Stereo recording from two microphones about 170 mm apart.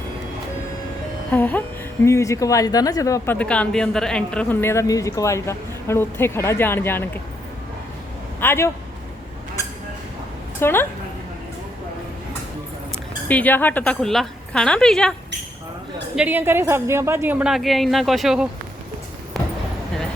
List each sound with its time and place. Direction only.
1.3 s speech: 10° left (ahead or behind)
3.3 s speech: 5° left (ahead or behind)
8.4 s speech: 15° left (ahead or behind)
10.6 s speech: 15° left (ahead or behind)
13.2 s speech: 10° left (ahead or behind)
16.1 s a woman's voice: 10° right (ahead or behind)
19.3 s a sound: centre (ahead or behind)